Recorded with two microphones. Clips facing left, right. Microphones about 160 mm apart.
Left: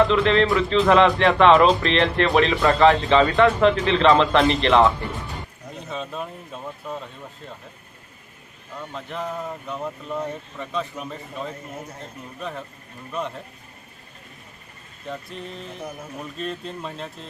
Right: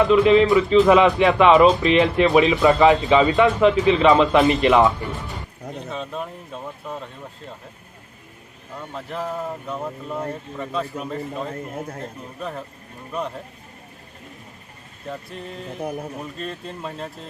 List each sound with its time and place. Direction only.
0.0 s speech: 5° right (ahead or behind)
5.9 s speech: centre (ahead or behind)
8.9 s speech: 5° right (ahead or behind)
12.4 s speech: 5° right (ahead or behind)
16.4 s speech: centre (ahead or behind)